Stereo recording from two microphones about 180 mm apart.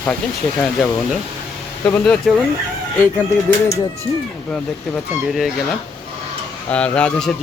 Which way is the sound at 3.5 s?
10° left (ahead or behind).